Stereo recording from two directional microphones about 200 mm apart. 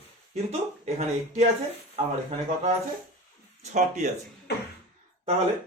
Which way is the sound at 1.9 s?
30° right (ahead or behind).